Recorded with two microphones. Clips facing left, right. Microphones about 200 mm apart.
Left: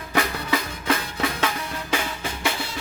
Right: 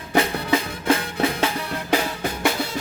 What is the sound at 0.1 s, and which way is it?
Music, 25° right (ahead or behind).